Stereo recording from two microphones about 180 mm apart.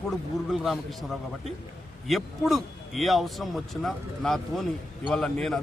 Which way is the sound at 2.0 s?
Centre (ahead or behind).